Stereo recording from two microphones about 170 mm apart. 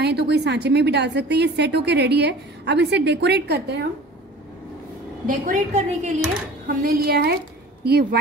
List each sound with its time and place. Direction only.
0.0 s a woman's voice: 75° right (ahead or behind)
5.2 s a woman's voice: 45° right (ahead or behind)
6.7 s a woman's voice: 60° right (ahead or behind)